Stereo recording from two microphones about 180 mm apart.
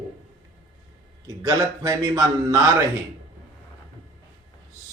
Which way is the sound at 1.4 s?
20° right (ahead or behind).